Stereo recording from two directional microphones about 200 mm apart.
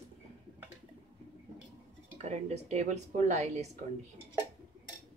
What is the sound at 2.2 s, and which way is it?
Speech, 35° right (ahead or behind).